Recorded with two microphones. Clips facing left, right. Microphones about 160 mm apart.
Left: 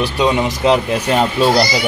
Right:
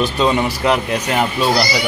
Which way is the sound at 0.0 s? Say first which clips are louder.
Left 1 dB; 15° left (ahead or behind).